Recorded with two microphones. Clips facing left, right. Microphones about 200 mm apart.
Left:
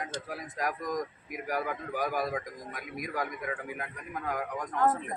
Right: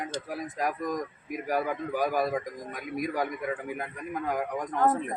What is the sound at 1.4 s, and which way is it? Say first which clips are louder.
Speech: right 4 dB; 25° right (ahead or behind).